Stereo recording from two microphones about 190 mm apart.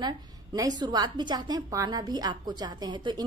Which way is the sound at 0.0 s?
20° right (ahead or behind).